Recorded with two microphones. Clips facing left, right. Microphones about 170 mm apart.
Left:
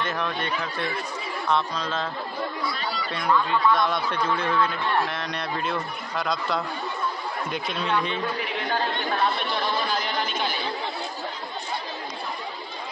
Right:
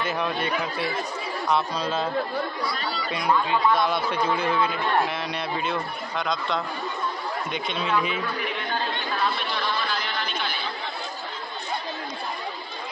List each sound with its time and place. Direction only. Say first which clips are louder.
0.0 s speech: right 2 dB; 5° right (ahead or behind)
3.1 s speech: even; 10° right (ahead or behind)
9.2 s chatter: left 1 dB; 50° left (ahead or behind)